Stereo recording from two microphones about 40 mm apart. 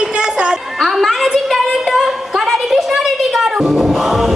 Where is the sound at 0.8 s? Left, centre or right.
Centre.